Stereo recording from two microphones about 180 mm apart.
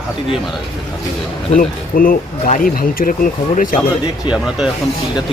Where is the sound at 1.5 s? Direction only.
50° left (ahead or behind).